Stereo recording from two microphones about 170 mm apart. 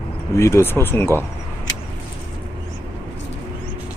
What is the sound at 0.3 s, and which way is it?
Speech, 15° left (ahead or behind).